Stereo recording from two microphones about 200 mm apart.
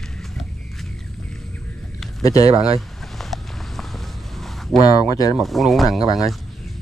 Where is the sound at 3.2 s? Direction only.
Centre (ahead or behind).